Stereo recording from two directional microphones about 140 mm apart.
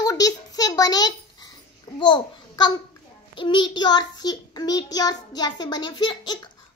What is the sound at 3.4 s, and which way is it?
Child singing, 35° left (ahead or behind).